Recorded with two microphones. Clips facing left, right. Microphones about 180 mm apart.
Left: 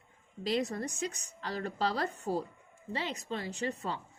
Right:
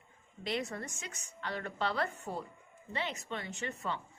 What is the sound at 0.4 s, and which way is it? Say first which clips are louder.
A woman's voice: left 5 dB; 35° left (ahead or behind).